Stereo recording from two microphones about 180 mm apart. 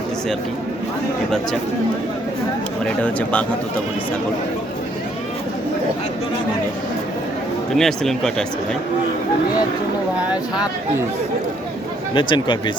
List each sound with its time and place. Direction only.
2.8 s speech: 10° left (ahead or behind)
7.8 s speech: centre (ahead or behind)
12.1 s speech: 25° left (ahead or behind)